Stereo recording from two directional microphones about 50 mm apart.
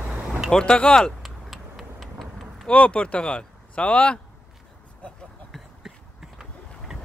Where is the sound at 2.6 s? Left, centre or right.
Left.